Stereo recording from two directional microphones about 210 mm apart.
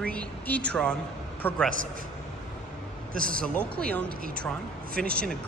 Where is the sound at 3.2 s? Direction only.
40° right (ahead or behind).